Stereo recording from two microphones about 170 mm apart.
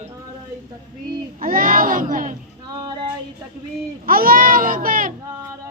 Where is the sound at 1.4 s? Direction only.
55° right (ahead or behind).